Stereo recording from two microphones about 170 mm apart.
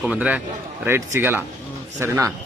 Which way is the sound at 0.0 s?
5° right (ahead or behind).